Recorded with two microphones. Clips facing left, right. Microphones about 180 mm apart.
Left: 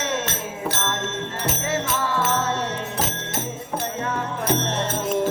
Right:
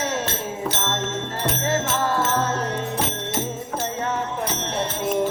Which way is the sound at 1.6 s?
45° right (ahead or behind).